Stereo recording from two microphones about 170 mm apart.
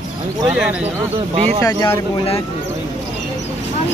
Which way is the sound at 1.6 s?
20° left (ahead or behind).